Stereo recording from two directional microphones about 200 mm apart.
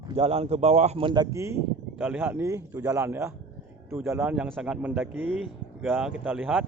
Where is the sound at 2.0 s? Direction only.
5° right (ahead or behind).